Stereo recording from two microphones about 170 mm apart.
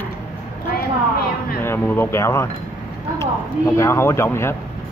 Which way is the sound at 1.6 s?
10° left (ahead or behind).